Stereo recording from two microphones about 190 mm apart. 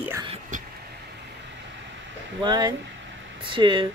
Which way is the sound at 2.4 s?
20° right (ahead or behind).